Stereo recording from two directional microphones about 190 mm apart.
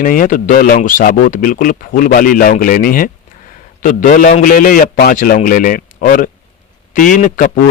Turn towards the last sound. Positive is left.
turn(degrees=45)  # may be behind; listen again after turning